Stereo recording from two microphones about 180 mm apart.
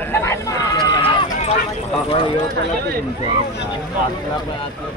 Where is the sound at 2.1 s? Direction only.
25° left (ahead or behind).